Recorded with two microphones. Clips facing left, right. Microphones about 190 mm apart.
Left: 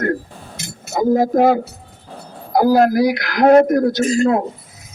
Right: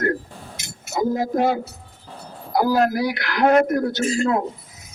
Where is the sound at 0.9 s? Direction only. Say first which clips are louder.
Left 6 dB; 45° left (ahead or behind).